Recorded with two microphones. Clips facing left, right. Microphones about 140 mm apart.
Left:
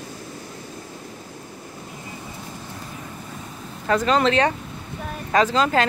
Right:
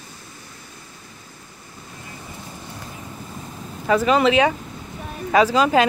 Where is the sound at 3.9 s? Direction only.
5° right (ahead or behind).